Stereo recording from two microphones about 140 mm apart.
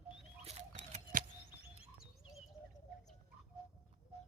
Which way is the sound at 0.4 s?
55° right (ahead or behind).